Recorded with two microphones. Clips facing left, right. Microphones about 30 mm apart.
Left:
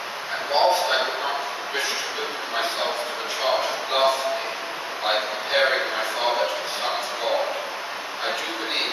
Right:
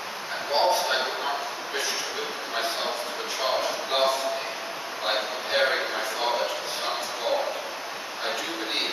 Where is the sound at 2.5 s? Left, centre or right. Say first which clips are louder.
Left 3 dB; centre.